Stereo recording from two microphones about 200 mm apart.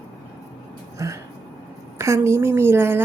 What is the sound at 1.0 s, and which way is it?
A woman's voice, 15° right (ahead or behind).